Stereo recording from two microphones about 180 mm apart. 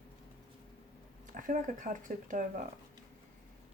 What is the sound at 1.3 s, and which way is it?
Speech, 45° right (ahead or behind).